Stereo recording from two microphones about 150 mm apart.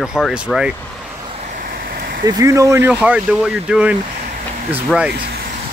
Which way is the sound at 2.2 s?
25° right (ahead or behind).